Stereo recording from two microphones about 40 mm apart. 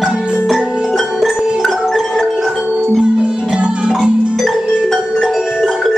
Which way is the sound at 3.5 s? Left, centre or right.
Right.